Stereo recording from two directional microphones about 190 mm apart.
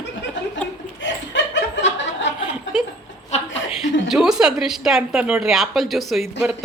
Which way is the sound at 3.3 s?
35° left (ahead or behind).